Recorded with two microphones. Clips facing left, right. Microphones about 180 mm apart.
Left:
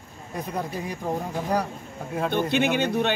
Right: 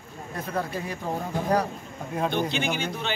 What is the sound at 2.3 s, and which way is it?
Speech, 55° left (ahead or behind).